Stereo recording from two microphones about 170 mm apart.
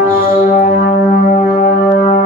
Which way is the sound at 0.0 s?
55° left (ahead or behind).